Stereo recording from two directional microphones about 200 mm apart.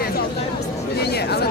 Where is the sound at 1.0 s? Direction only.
55° left (ahead or behind).